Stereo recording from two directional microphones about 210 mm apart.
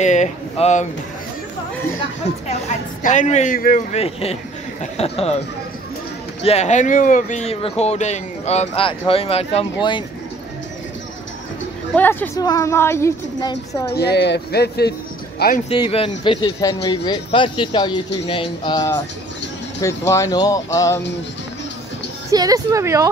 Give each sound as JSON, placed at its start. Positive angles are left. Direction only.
{"t": 0.0, "sound": "speech", "side_deg": 35}
{"t": 2.3, "sound": "speech", "side_deg": 30}
{"t": 3.9, "sound": "speech", "side_deg": 30}
{"t": 6.4, "sound": "speech", "side_deg": 30}
{"t": 11.9, "sound": "a woman's voice", "side_deg": 10}
{"t": 13.9, "sound": "speech", "side_deg": 50}
{"t": 15.7, "sound": "a woman's voice", "side_deg": 25}
{"t": 22.3, "sound": "a woman's voice", "side_deg": -15}